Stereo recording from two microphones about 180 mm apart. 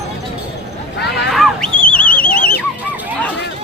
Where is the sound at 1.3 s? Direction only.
Centre (ahead or behind).